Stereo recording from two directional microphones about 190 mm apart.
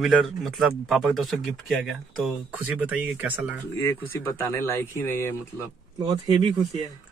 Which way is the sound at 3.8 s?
15° left (ahead or behind).